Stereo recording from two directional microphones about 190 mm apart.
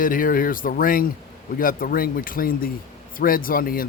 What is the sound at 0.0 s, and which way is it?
Speech, 45° left (ahead or behind).